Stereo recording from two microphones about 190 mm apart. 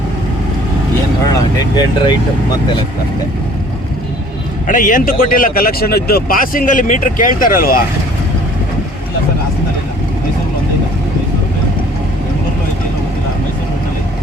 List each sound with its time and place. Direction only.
1.3 s speech: 20° left (ahead or behind)
4.6 s speech: 45° left (ahead or behind)